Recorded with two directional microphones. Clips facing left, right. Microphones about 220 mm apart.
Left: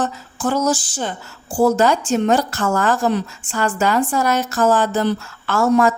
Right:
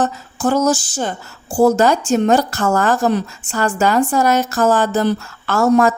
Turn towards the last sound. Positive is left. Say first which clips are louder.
# right 2 dB
turn(degrees=-45)  # may be behind; listen again after turning